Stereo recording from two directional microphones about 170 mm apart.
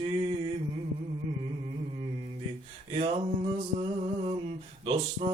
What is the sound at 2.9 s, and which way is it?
Speech, 35° right (ahead or behind).